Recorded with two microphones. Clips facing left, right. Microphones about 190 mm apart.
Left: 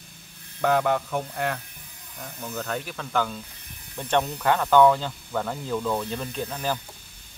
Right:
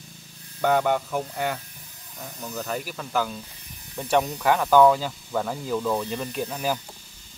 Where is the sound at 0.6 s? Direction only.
Centre (ahead or behind).